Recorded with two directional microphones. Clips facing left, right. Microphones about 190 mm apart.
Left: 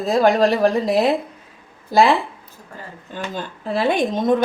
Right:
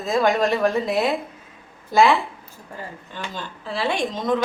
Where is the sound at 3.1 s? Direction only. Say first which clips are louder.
Left 8 dB; 45° left (ahead or behind).